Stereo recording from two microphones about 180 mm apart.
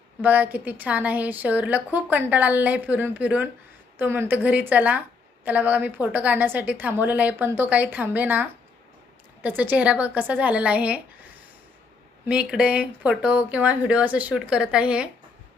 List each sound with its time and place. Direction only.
0.2 s a woman's voice: 10° right (ahead or behind)
12.3 s a woman's voice: 5° right (ahead or behind)